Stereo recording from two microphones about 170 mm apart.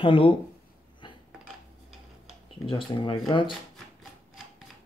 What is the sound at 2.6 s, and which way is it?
Speech, 30° left (ahead or behind).